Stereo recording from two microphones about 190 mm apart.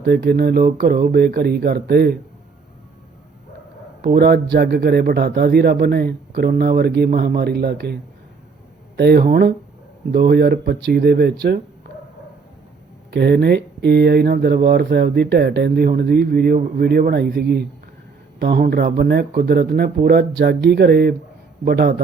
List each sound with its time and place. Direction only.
0.0 s speech: 60° right (ahead or behind)
4.0 s speech: 55° right (ahead or behind)
9.0 s speech: 55° right (ahead or behind)
13.1 s speech: 60° right (ahead or behind)